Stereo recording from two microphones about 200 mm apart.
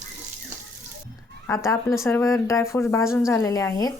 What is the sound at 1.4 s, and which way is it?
Speech, 15° left (ahead or behind).